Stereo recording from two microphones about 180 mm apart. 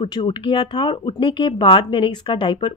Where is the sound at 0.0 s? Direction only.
25° left (ahead or behind).